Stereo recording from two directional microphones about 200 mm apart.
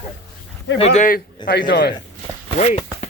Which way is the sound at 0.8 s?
40° left (ahead or behind).